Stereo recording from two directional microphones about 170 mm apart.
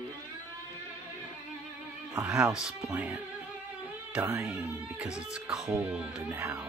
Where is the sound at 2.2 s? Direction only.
5° right (ahead or behind).